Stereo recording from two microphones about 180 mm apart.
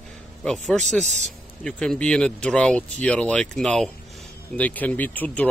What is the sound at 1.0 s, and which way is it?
Speech, 40° right (ahead or behind).